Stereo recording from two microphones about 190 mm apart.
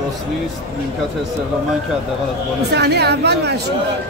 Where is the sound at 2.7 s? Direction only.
60° right (ahead or behind).